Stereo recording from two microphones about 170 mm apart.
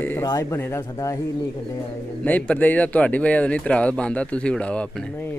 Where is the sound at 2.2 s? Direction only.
10° left (ahead or behind).